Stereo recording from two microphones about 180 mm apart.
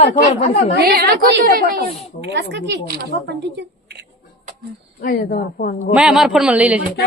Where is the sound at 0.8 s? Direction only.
60° right (ahead or behind).